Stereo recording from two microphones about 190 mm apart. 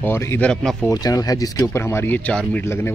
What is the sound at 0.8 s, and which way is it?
Speech, 20° left (ahead or behind).